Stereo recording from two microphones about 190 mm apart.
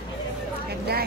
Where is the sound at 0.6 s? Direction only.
55° right (ahead or behind).